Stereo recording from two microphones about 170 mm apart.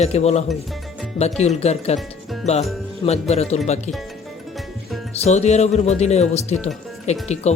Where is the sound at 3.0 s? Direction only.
40° left (ahead or behind).